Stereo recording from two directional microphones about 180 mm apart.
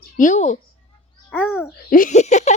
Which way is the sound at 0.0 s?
45° left (ahead or behind).